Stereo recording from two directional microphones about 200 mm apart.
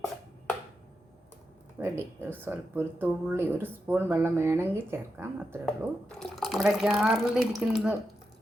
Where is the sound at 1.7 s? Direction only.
10° right (ahead or behind).